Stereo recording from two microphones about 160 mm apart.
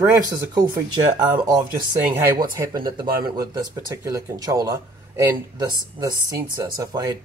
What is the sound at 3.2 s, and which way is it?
Speech, 25° right (ahead or behind).